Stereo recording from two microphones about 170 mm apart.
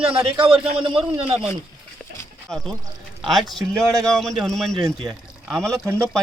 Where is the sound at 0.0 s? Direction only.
30° right (ahead or behind).